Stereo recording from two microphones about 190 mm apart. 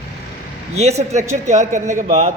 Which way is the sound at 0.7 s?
35° right (ahead or behind).